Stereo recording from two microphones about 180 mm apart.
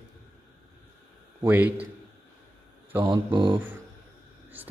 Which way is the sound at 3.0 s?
25° right (ahead or behind).